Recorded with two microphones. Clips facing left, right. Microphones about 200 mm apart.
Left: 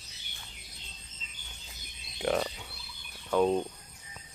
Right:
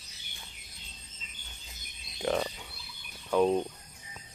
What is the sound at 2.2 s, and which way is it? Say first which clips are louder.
Frog: left 1 dB; centre (ahead or behind).